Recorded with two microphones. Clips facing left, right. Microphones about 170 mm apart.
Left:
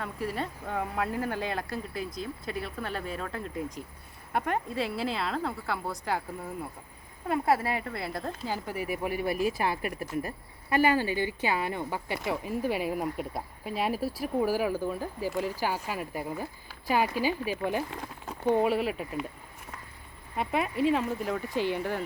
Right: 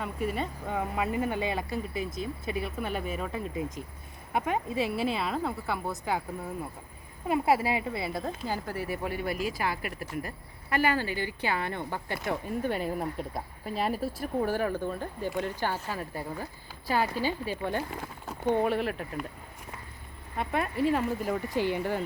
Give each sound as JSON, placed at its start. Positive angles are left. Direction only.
{"t": 0.0, "sound": "speech", "side_deg": 0}
{"t": 7.3, "sound": "speech", "side_deg": -5}
{"t": 8.7, "sound": "speech", "side_deg": 10}
{"t": 9.6, "sound": "speech", "side_deg": 25}
{"t": 20.3, "sound": "speech", "side_deg": 5}